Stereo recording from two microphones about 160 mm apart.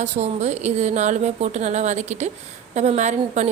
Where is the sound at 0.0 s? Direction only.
45° right (ahead or behind).